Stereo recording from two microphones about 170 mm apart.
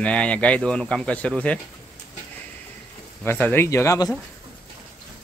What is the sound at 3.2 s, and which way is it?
Speech, 10° left (ahead or behind).